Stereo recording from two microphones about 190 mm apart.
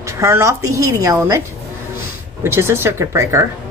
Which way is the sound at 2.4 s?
15° right (ahead or behind).